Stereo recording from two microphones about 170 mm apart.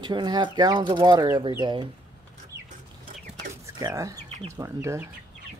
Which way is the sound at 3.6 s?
20° right (ahead or behind).